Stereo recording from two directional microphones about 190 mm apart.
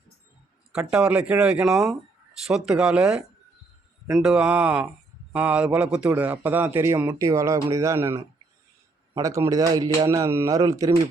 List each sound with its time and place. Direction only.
0.7 s a man's voice: 5° right (ahead or behind)